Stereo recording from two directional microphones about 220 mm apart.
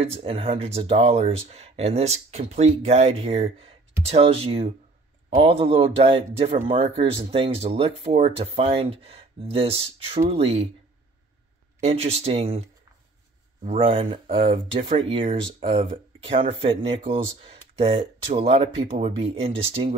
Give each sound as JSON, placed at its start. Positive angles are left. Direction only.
{"t": 0.0, "sound": "speech", "side_deg": -25}
{"t": 11.8, "sound": "speech", "side_deg": -25}
{"t": 13.7, "sound": "speech", "side_deg": -25}